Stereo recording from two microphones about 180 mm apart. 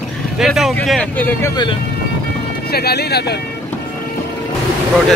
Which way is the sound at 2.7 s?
60° left (ahead or behind).